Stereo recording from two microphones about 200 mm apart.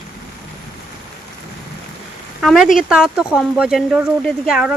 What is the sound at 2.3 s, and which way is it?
Speech, centre (ahead or behind).